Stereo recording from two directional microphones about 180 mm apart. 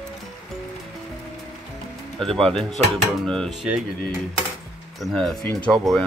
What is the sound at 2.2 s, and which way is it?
Speech, centre (ahead or behind).